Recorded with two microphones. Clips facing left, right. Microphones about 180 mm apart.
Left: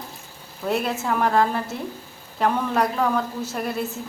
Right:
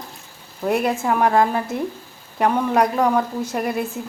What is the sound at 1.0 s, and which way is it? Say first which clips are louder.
A woman's voice: right 2 dB; 15° right (ahead or behind).